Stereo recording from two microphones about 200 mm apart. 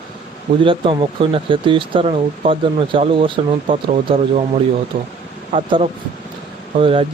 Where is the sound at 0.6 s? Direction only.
25° right (ahead or behind).